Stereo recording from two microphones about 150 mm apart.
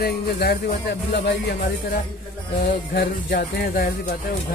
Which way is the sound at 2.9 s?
90° left.